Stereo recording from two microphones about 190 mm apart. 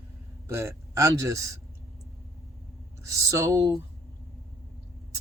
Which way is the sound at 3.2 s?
15° right (ahead or behind).